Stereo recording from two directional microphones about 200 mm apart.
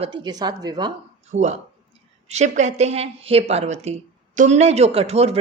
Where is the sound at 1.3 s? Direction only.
35° right (ahead or behind).